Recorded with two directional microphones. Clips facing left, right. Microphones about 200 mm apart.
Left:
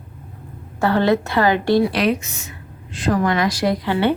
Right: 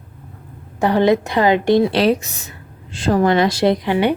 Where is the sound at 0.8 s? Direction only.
15° right (ahead or behind).